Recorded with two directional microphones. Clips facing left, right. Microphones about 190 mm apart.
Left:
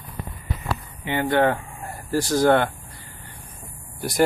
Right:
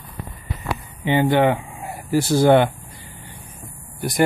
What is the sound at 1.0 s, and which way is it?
Speech, 20° right (ahead or behind).